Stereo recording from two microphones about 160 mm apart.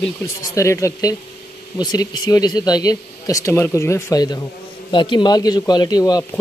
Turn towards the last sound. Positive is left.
turn(degrees=25)  # may be behind; listen again after turning